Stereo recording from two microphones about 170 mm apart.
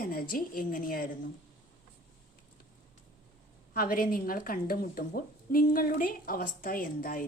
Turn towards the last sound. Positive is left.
turn(degrees=55)  # may be behind; listen again after turning